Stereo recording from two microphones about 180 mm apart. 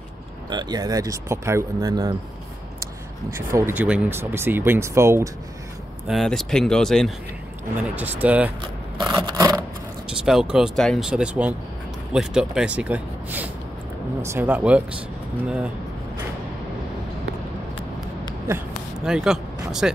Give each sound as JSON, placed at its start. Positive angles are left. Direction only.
{"t": 0.5, "sound": "speech", "side_deg": -25}
{"t": 6.0, "sound": "speech", "side_deg": 0}
{"t": 7.9, "sound": "speech", "side_deg": -10}
{"t": 8.9, "sound": "scrape", "side_deg": -20}
{"t": 10.2, "sound": "speech", "side_deg": -5}
{"t": 18.5, "sound": "a sound", "side_deg": -5}